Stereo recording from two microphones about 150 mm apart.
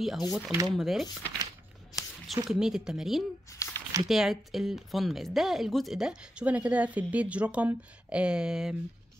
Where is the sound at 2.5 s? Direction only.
5° right (ahead or behind).